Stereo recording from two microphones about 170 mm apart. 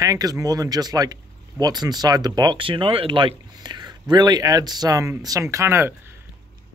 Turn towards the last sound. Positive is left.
turn(degrees=-15)  # may be behind; listen again after turning